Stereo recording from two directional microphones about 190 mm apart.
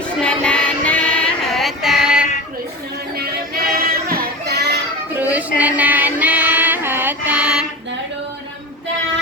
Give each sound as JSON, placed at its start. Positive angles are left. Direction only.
{"t": 0.2, "sound": "music", "side_deg": 5}
{"t": 3.2, "sound": "child singing", "side_deg": -55}
{"t": 5.1, "sound": "music", "side_deg": -10}